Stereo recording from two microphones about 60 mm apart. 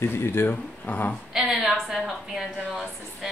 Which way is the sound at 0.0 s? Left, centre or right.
Left.